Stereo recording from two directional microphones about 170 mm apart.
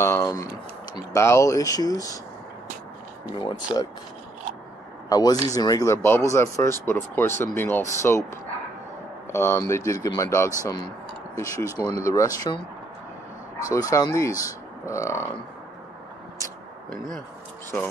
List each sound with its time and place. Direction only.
0.0 s speech: 15° left (ahead or behind)
3.3 s speech: 25° left (ahead or behind)
5.1 s speech: 25° left (ahead or behind)
9.3 s speech: 15° left (ahead or behind)
13.7 s speech: 20° left (ahead or behind)